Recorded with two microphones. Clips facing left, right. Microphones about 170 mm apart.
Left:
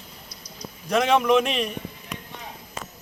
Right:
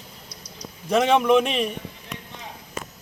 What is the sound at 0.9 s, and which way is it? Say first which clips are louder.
Speech: right 1 dB; centre (ahead or behind).